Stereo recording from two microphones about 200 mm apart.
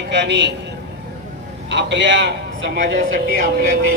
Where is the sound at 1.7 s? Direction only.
60° right (ahead or behind).